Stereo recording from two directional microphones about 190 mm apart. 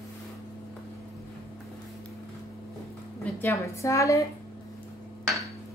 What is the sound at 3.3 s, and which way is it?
Speech, 15° left (ahead or behind).